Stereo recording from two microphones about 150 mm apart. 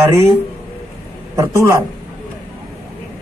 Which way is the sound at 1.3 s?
20° right (ahead or behind).